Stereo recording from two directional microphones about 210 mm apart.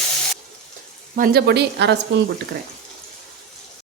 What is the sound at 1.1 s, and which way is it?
Speech, 45° right (ahead or behind).